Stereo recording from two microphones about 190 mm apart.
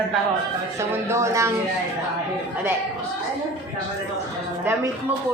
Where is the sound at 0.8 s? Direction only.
15° right (ahead or behind).